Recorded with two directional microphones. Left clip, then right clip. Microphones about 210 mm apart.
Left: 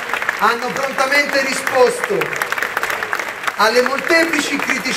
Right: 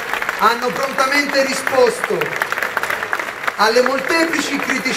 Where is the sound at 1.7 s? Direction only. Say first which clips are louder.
Left 1 dB; 40° left (ahead or behind).